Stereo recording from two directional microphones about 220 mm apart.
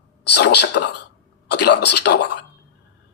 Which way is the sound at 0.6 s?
50° left (ahead or behind).